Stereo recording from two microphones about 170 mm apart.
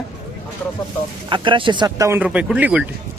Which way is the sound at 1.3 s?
30° right (ahead or behind).